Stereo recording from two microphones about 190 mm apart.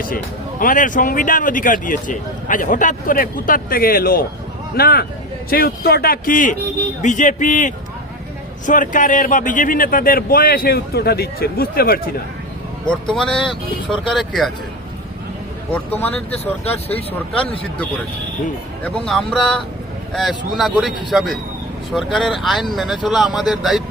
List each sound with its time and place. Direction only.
0.6 s speech: 45° left (ahead or behind)
12.9 s speech: 5° left (ahead or behind)
15.7 s speech: 10° left (ahead or behind)
18.9 s speech: centre (ahead or behind)